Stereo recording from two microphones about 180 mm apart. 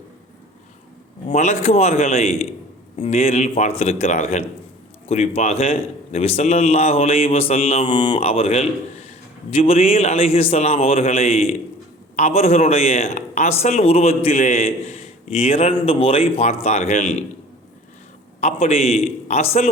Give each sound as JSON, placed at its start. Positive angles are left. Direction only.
{"t": 1.3, "sound": "a man's voice", "side_deg": 40}
{"t": 18.3, "sound": "a man's voice", "side_deg": 35}